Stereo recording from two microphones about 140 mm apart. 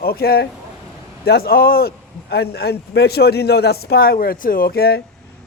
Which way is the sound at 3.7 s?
90° left.